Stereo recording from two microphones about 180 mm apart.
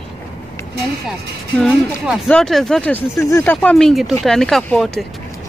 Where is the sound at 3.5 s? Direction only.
5° left (ahead or behind).